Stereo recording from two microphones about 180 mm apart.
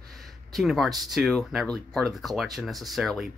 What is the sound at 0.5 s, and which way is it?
Speech, centre (ahead or behind).